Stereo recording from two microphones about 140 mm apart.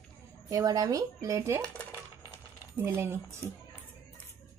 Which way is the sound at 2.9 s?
20° right (ahead or behind).